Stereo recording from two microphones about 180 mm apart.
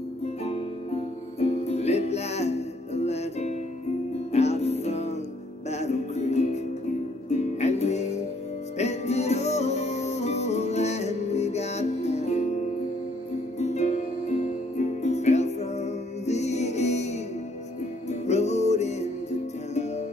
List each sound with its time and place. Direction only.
1.4 s music: 35° left (ahead or behind)
13.6 s music: 40° left (ahead or behind)
18.2 s music: 40° left (ahead or behind)